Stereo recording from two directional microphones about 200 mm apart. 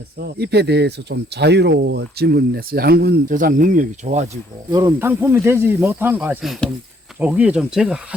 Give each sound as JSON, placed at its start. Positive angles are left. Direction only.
{"t": 0.2, "sound": "speech", "side_deg": -55}
{"t": 4.7, "sound": "speech", "side_deg": -15}